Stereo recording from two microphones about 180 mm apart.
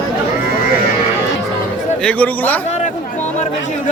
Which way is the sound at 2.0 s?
5° left (ahead or behind).